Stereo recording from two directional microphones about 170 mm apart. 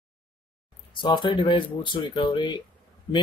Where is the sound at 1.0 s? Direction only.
30° left (ahead or behind).